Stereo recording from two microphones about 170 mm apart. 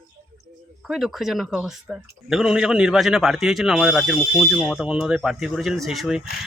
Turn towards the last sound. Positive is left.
turn(degrees=0)  # may be behind; listen again after turning